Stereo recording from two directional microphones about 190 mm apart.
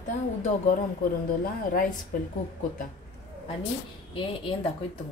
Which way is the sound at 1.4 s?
50° left (ahead or behind).